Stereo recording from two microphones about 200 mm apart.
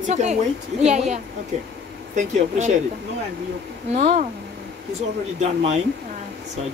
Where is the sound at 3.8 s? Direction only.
35° right (ahead or behind).